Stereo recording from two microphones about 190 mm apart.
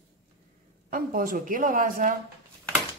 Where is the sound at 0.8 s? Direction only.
45° right (ahead or behind).